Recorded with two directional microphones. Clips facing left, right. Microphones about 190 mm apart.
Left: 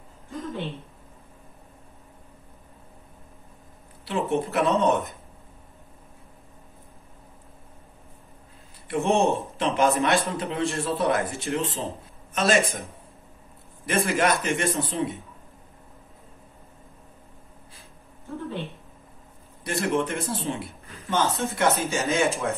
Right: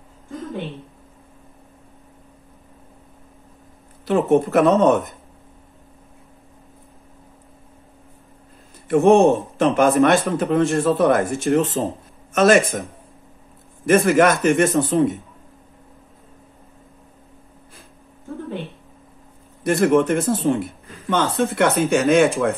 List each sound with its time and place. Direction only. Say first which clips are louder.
4.0 s speech: right 9 dB; 55° right (ahead or behind)
8.8 s a man's voice: right 9 dB; 50° right (ahead or behind)
13.8 s speech: right 9 dB; 55° right (ahead or behind)
19.6 s speech: right 9 dB; 55° right (ahead or behind)
21.1 s speech: right 5 dB; 60° right (ahead or behind)